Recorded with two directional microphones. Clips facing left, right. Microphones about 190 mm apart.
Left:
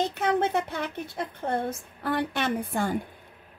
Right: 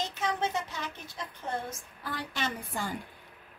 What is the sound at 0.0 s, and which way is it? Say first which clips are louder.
A woman's voice: left 7 dB; 60° left (ahead or behind).